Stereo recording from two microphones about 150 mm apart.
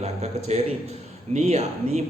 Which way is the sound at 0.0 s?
45° right (ahead or behind).